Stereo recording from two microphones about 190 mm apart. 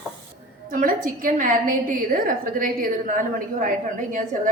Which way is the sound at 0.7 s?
45° right (ahead or behind).